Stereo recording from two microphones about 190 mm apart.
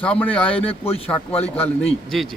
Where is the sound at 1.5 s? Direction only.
10° left (ahead or behind).